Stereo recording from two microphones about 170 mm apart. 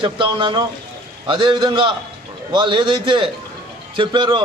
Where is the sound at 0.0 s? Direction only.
30° right (ahead or behind).